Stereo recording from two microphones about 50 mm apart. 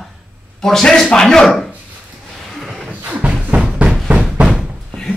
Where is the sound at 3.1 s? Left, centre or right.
Right.